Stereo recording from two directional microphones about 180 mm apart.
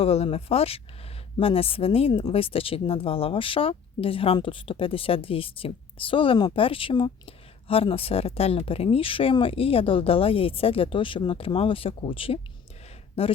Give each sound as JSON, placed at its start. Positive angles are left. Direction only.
{"t": 0.0, "sound": "speech", "side_deg": 35}